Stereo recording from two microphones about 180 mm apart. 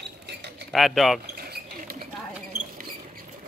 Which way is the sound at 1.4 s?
60° right (ahead or behind).